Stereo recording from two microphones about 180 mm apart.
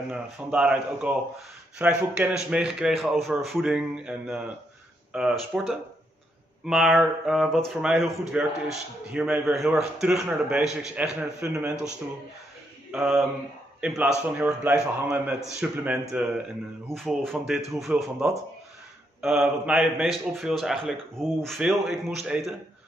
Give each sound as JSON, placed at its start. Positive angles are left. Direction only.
{"t": 0.1, "sound": "speech", "side_deg": -5}
{"t": 12.9, "sound": "a man's voice", "side_deg": 0}